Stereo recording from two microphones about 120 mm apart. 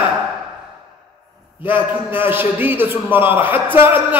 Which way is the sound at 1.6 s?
15° right (ahead or behind).